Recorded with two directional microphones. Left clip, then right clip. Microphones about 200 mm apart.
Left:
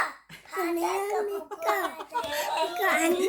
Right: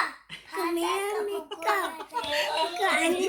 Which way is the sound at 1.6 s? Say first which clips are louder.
Right 1 dB; 25° left (ahead or behind).